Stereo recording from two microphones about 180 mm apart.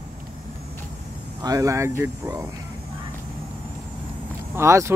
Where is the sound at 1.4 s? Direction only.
20° right (ahead or behind).